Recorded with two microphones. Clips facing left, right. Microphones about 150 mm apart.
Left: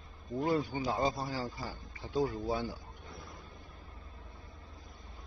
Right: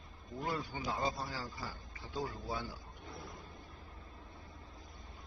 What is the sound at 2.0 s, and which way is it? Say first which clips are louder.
Speech: left 9 dB; 20° left (ahead or behind).